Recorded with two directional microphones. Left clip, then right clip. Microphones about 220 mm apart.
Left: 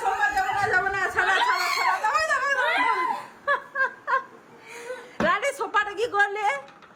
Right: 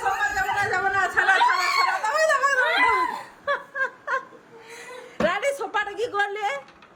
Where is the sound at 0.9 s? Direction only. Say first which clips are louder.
Right 3 dB; 15° right (ahead or behind).